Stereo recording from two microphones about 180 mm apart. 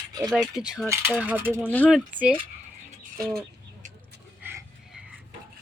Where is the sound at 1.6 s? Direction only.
10° left (ahead or behind).